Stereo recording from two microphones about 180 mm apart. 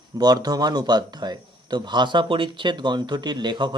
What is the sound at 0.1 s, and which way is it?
A man's voice, 20° right (ahead or behind).